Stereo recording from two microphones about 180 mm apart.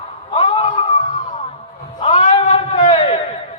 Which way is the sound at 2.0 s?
30° left (ahead or behind).